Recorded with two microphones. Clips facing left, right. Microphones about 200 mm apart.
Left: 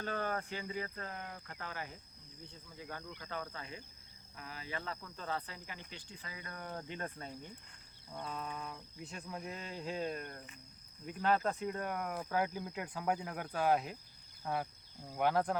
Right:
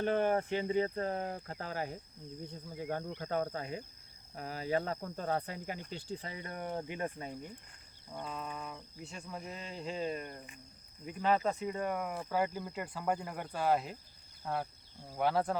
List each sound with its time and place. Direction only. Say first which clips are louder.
0.0 s speech: right 8 dB; 20° right (ahead or behind); by 2.0 s 40° right (ahead or behind)
2.6 s insect: right 9 dB; 45° right (ahead or behind)
4.4 s speech: right 11 dB; 40° right (ahead or behind); by 7.3 s 15° right (ahead or behind)
8.1 s speech: right 1 dB; centre (ahead or behind)